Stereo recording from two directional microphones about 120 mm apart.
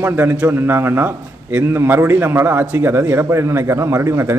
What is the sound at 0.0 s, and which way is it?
A man's voice, 15° right (ahead or behind).